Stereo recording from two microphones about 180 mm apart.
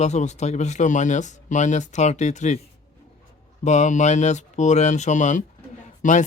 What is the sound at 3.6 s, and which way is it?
Speech, 40° left (ahead or behind).